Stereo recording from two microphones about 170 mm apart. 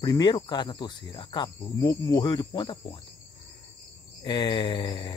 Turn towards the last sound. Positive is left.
turn(degrees=25)  # may be behind; listen again after turning